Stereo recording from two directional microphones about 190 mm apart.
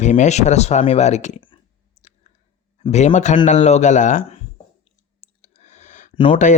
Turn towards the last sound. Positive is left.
turn(degrees=40)  # may be behind; listen again after turning